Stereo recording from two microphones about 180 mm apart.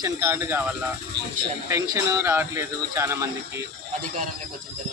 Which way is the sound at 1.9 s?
15° right (ahead or behind).